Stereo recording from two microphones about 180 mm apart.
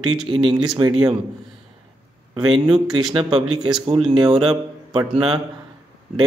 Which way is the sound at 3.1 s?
25° right (ahead or behind).